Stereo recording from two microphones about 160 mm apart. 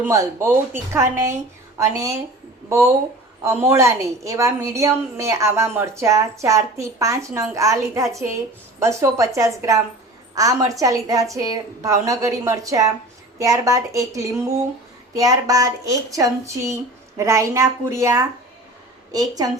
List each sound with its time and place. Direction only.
0.0 s a woman's voice: 20° right (ahead or behind)
3.4 s a woman's voice: 15° right (ahead or behind)